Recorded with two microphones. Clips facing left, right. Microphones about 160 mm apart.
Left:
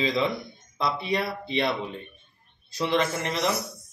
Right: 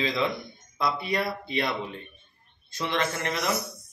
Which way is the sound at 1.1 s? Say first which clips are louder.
Left 1 dB; centre (ahead or behind).